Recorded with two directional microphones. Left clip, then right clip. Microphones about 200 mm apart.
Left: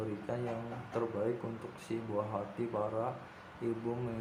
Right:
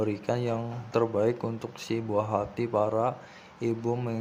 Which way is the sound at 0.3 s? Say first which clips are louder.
Right 9 dB; 50° right (ahead or behind).